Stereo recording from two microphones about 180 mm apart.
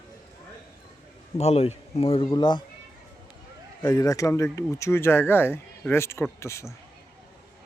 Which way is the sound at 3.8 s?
20° left (ahead or behind).